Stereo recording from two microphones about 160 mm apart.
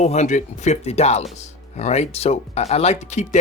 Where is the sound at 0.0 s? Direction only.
45° left (ahead or behind).